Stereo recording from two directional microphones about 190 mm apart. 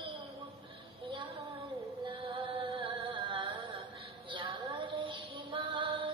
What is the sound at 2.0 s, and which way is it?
Music, 25° right (ahead or behind).